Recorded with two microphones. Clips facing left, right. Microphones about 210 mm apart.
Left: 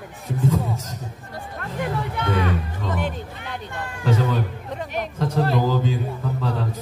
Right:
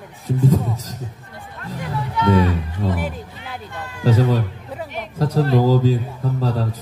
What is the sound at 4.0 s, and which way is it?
A man's voice, 35° right (ahead or behind).